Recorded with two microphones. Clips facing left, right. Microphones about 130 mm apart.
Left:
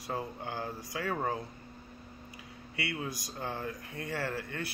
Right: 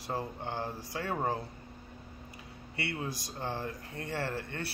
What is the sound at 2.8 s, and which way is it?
Speech, 25° right (ahead or behind).